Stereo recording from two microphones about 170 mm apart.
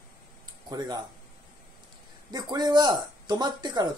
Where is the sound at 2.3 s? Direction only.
25° right (ahead or behind).